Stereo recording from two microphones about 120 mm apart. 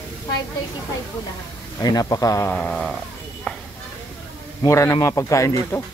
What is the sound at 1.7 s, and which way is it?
Speech, 35° left (ahead or behind).